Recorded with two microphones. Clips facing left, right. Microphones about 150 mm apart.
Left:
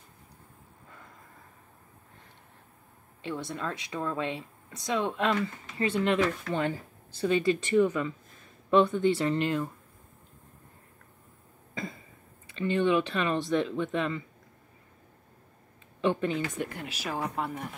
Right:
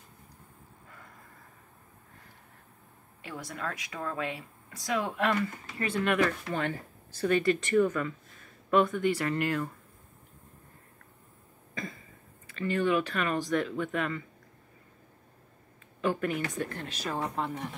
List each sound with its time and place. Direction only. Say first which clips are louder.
3.2 s speech: left 4 dB; 25° left (ahead or behind)
8.6 s speech: left 2 dB; 25° left (ahead or behind)
12.4 s speech: left 2 dB; 25° left (ahead or behind)
16.0 s speech: left 2 dB; 25° left (ahead or behind); by 17.6 s 5° left (ahead or behind)